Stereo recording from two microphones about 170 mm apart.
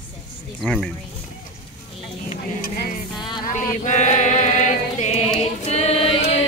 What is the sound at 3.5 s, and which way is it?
Chant, 45° left (ahead or behind).